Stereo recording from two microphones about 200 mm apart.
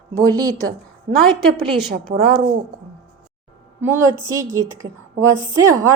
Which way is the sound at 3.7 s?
10° right (ahead or behind).